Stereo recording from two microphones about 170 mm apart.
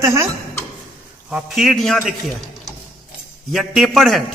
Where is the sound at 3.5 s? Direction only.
Centre (ahead or behind).